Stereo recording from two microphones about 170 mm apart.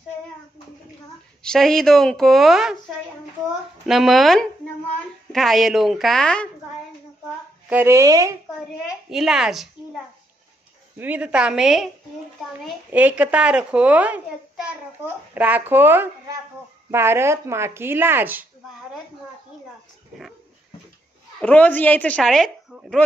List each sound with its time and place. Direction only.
1.4 s speech: 5° left (ahead or behind)
3.8 s speech: centre (ahead or behind)
7.7 s a child's voice: 15° right (ahead or behind)
8.8 s speech: 5° right (ahead or behind)
11.0 s a child's voice: 10° right (ahead or behind)
12.9 s a child's voice: 10° right (ahead or behind)
21.4 s speech: 10° left (ahead or behind)